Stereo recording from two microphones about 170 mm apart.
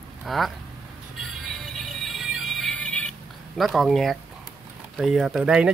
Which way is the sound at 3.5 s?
Centre (ahead or behind).